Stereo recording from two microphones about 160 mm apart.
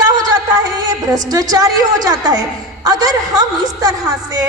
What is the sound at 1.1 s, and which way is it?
Speech, 25° right (ahead or behind).